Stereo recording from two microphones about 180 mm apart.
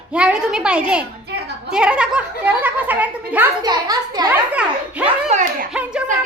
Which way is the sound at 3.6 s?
20° right (ahead or behind).